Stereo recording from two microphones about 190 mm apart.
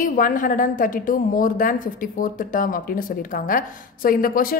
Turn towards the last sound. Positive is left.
turn(degrees=50)  # may be behind; listen again after turning